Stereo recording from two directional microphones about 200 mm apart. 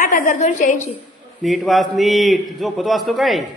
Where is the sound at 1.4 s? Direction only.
Centre (ahead or behind).